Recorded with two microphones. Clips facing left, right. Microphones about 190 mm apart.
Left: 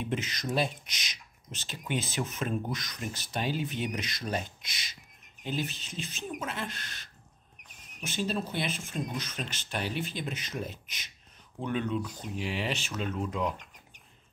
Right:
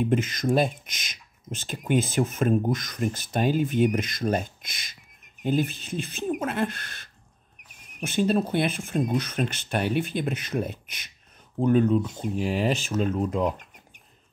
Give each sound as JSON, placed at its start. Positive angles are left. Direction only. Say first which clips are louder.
{"t": 0.0, "sound": "speech", "louder": "right 9 dB", "side_deg": -50}
{"t": 11.6, "sound": "speech", "louder": "right 11 dB", "side_deg": -40}